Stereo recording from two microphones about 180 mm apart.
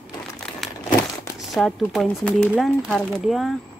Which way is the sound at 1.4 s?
Centre (ahead or behind).